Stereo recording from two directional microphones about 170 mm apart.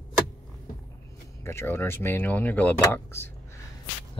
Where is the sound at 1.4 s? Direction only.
15° left (ahead or behind).